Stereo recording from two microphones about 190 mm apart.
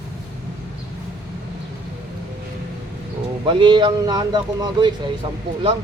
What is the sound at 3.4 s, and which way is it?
A man's voice, 25° right (ahead or behind).